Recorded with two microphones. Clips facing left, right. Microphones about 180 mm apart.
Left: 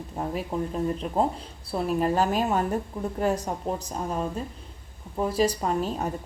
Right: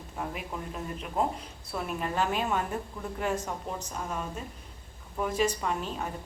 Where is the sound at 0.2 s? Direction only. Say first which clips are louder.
Left 7 dB; 35° left (ahead or behind).